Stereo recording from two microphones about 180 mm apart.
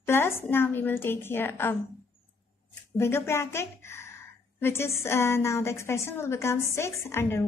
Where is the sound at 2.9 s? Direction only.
15° left (ahead or behind).